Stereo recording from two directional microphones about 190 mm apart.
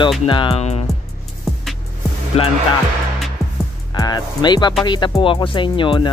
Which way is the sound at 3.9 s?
20° left (ahead or behind).